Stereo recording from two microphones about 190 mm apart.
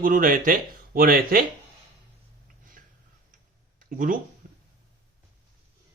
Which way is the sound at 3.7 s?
45° right (ahead or behind).